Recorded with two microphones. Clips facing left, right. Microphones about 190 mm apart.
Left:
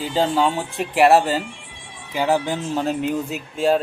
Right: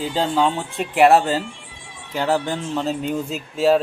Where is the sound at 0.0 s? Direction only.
Centre (ahead or behind).